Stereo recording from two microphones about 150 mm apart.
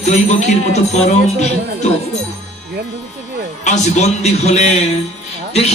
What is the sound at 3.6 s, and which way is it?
Speech, 50° left (ahead or behind).